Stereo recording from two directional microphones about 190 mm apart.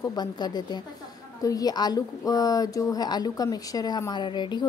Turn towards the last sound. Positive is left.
turn(degrees=25)  # may be behind; listen again after turning